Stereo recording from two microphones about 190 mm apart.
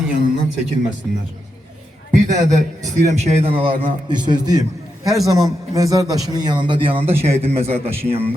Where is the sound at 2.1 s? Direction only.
40° right (ahead or behind).